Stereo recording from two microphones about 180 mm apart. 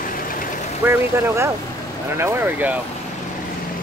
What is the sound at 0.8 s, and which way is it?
Speech, 15° right (ahead or behind).